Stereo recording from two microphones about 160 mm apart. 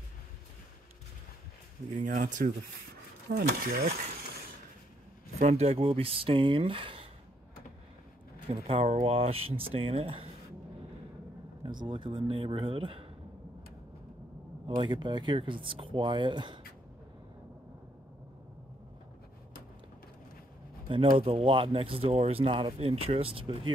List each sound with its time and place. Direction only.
2.0 s speech: 55° right (ahead or behind)
3.3 s speech: 80° right
5.4 s speech: 40° right (ahead or behind)
8.5 s speech: 35° right (ahead or behind)
11.6 s speech: 30° right (ahead or behind)
14.7 s speech: 25° right (ahead or behind)
21.2 s speech: 35° right (ahead or behind)